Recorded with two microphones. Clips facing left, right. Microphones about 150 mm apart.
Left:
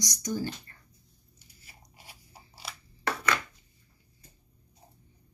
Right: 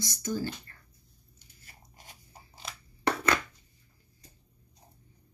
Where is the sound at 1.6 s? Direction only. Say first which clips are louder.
Even; 10° left (ahead or behind).